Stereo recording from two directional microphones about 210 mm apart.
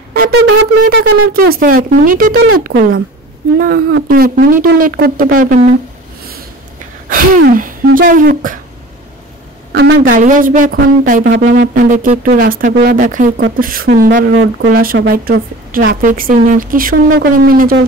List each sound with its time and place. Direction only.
0.3 s speech: 70° right (ahead or behind)
0.8 s speech: 45° right (ahead or behind)
7.4 s speech: 40° right (ahead or behind)
9.7 s a sound: 60° right (ahead or behind)
10.0 s speech: 40° right (ahead or behind)
14.3 s speech: 65° right (ahead or behind)
14.7 s speech: 45° right (ahead or behind)